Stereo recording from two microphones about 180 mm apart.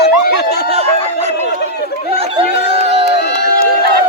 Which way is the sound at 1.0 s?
35° left (ahead or behind).